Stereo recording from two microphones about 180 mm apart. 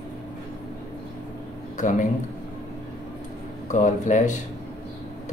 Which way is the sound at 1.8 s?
45° left (ahead or behind).